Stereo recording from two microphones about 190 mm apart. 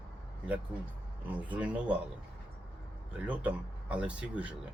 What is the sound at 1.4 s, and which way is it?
Speech, 5° right (ahead or behind).